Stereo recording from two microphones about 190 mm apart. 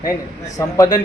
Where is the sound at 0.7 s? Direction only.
20° left (ahead or behind).